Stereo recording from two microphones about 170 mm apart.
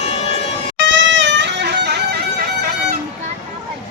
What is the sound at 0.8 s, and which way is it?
Music, 90° right.